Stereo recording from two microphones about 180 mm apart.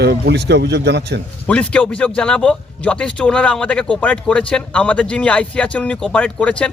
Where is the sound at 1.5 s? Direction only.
5° left (ahead or behind).